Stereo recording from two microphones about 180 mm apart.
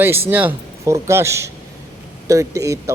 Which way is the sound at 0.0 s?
10° right (ahead or behind).